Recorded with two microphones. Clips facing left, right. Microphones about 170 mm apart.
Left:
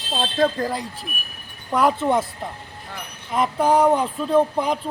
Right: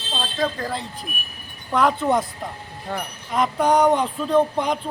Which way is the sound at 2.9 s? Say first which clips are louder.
Right 9 dB; 50° right (ahead or behind).